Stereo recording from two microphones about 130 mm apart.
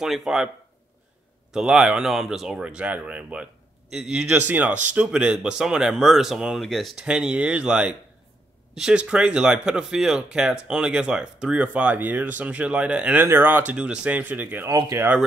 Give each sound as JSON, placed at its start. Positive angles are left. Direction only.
{"t": 0.0, "sound": "a man's voice", "side_deg": 0}
{"t": 1.5, "sound": "a man's voice", "side_deg": -5}
{"t": 14.7, "sound": "speech", "side_deg": -25}